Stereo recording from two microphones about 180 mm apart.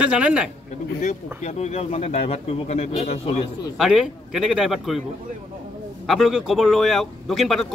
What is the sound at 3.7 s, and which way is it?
A man's voice, 5° right (ahead or behind).